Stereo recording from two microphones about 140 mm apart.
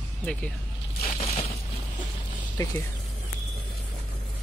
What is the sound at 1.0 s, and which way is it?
Crushing, 50° left (ahead or behind).